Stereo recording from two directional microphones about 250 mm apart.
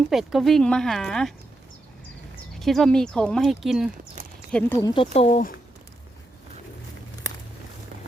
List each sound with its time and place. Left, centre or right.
0.1 s speech: centre
2.6 s speech: centre
4.5 s speech: centre
5.1 s speech: left